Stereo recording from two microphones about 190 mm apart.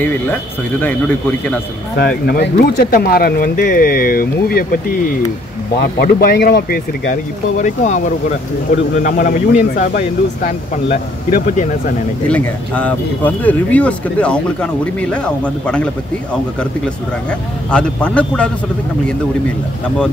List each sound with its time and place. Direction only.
0.0 s speech: 10° left (ahead or behind)
2.0 s speech: 55° left (ahead or behind)
12.3 s speech: 5° left (ahead or behind)